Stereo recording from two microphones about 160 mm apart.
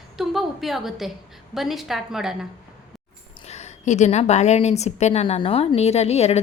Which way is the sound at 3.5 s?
45° left (ahead or behind).